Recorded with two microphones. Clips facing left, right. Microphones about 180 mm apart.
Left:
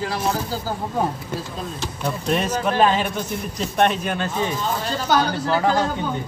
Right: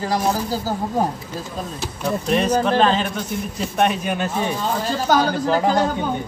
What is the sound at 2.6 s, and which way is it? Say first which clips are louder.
Speech: right 1 dB; 10° left (ahead or behind).